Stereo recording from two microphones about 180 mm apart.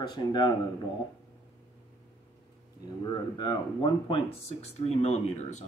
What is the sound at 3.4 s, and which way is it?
Speech, 25° left (ahead or behind).